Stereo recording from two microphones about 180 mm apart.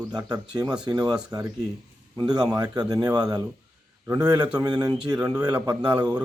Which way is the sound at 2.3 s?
20° right (ahead or behind).